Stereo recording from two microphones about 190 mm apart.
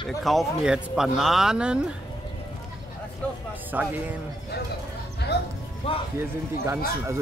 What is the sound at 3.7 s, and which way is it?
Speech, 10° right (ahead or behind).